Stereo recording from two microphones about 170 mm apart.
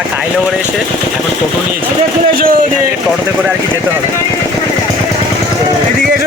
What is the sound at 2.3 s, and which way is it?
Speech, 55° right (ahead or behind).